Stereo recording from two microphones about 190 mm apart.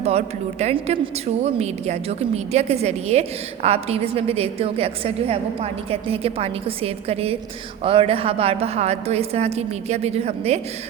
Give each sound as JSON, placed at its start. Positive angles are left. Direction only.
{"t": 0.0, "sound": "a woman's voice", "side_deg": -35}